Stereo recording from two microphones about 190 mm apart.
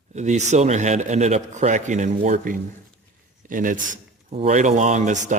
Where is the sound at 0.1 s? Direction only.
40° right (ahead or behind).